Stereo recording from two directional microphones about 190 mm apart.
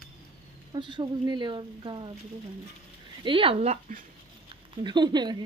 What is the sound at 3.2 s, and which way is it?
Speech, 30° right (ahead or behind).